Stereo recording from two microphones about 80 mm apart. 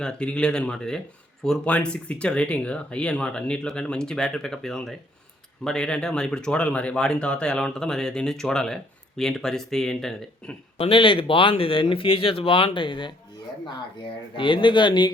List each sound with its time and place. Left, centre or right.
0.0 s speech: centre
10.9 s speech: left
14.3 s speech: left